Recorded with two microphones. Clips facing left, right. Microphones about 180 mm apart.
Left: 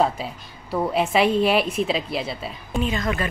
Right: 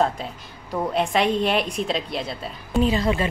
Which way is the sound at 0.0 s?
5° left (ahead or behind).